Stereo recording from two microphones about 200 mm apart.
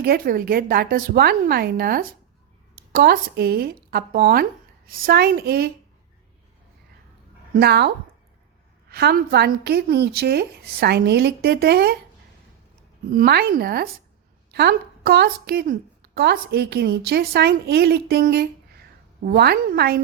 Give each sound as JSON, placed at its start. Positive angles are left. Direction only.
{"t": 0.0, "sound": "a woman's voice", "side_deg": -50}
{"t": 7.5, "sound": "a woman's voice", "side_deg": -55}
{"t": 8.9, "sound": "a woman's voice", "side_deg": -50}
{"t": 13.1, "sound": "a woman's voice", "side_deg": -50}